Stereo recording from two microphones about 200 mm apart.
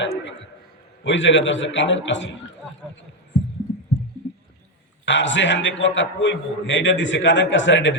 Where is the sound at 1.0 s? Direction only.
65° left (ahead or behind).